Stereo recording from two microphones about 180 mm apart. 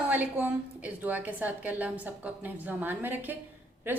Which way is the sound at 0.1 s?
10° right (ahead or behind).